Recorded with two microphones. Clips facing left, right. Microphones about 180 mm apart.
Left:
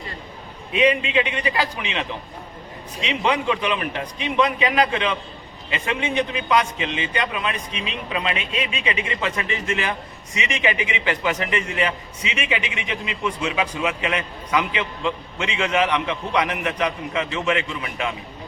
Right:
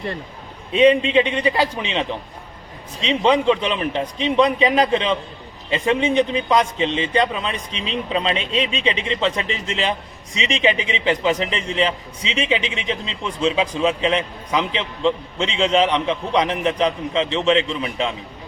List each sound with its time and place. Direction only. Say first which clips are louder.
0.7 s a man's voice: right 5 dB; 30° right (ahead or behind)
3.1 s a man's voice: right 6 dB; 25° right (ahead or behind)